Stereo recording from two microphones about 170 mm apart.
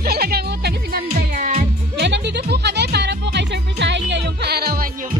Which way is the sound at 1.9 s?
85° right.